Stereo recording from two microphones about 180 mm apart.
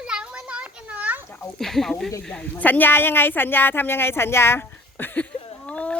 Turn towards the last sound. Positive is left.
turn(degrees=5)  # may be behind; listen again after turning